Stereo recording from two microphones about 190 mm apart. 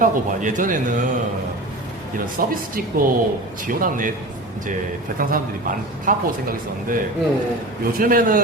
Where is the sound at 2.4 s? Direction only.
50° right (ahead or behind).